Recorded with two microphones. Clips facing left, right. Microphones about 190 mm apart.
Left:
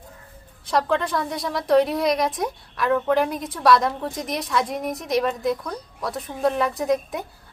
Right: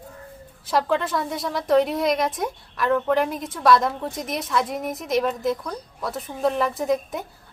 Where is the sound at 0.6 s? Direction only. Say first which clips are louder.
Even; centre (ahead or behind).